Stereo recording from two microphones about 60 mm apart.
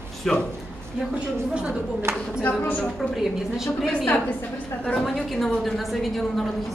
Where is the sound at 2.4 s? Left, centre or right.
Left.